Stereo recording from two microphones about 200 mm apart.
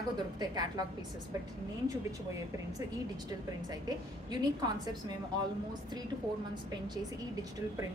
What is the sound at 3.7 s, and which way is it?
Speech, 20° right (ahead or behind).